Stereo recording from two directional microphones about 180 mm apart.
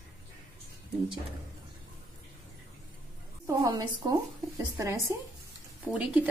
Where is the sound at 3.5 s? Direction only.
20° right (ahead or behind).